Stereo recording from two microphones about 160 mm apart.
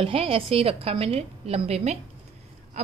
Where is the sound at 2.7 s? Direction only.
45° right (ahead or behind).